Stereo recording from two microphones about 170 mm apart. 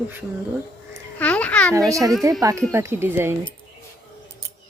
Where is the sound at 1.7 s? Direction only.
20° right (ahead or behind).